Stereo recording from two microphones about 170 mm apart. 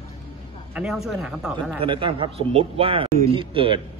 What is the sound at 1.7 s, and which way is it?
A man's voice, 30° right (ahead or behind).